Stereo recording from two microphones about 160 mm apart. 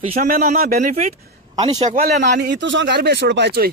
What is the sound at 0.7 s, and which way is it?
Speech, 45° right (ahead or behind).